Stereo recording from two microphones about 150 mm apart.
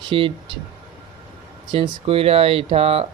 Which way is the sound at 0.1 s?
35° right (ahead or behind).